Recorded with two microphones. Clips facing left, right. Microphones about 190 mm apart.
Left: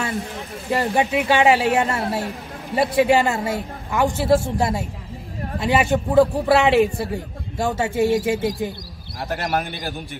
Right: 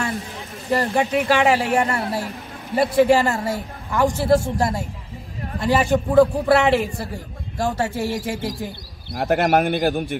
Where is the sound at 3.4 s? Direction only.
25° left (ahead or behind).